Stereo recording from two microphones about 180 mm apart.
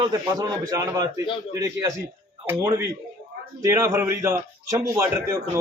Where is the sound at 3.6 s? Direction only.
15° right (ahead or behind).